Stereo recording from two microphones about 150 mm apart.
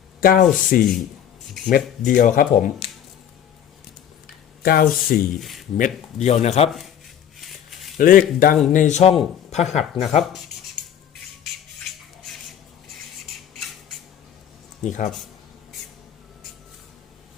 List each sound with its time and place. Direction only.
0.2 s speech: 75° left (ahead or behind)
0.5 s speech: 60° left (ahead or behind)
4.6 s speech: 80° left
5.4 s speech: centre (ahead or behind)
5.7 s speech: 55° left (ahead or behind)
6.7 s speech: centre (ahead or behind)
7.3 s a sound: centre (ahead or behind)
7.9 s speech: 65° left (ahead or behind)
8.7 s speech: 55° left (ahead or behind)
14.8 s speech: 55° left (ahead or behind)